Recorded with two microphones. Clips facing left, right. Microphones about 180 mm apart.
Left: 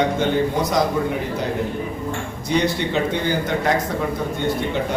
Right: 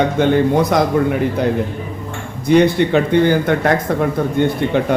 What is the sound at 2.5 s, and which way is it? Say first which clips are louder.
Speech: right 9 dB; 55° right (ahead or behind).